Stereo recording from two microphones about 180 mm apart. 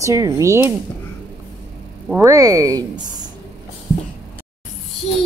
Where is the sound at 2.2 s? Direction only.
20° right (ahead or behind).